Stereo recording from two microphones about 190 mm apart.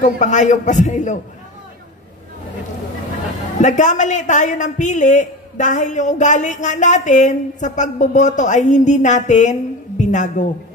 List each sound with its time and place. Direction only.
0.0 s a man's voice: 40° left (ahead or behind)
3.6 s a man's voice: 40° left (ahead or behind)